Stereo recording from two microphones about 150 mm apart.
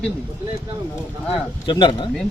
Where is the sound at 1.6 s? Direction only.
30° left (ahead or behind).